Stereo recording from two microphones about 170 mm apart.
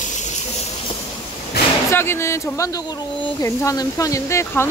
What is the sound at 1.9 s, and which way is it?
Speech, 15° left (ahead or behind).